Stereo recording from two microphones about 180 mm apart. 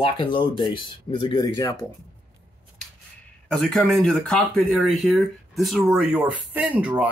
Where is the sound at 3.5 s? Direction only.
5° left (ahead or behind).